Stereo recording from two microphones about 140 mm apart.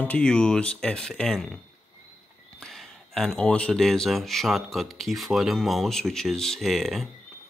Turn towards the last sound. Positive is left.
turn(degrees=0)  # may be behind; listen again after turning